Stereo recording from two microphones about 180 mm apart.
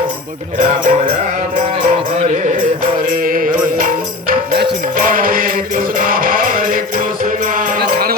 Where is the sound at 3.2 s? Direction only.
50° right (ahead or behind).